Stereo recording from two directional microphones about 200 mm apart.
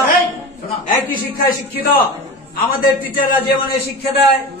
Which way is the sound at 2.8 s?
45° left (ahead or behind).